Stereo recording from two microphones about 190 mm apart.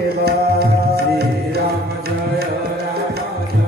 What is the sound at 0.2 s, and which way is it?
Music, 55° right (ahead or behind).